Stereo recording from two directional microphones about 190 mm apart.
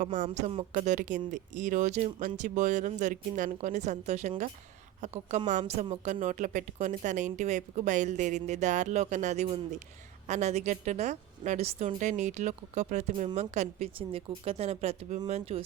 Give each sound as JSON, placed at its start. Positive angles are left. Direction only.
{"t": 0.0, "sound": "a woman's voice", "side_deg": -40}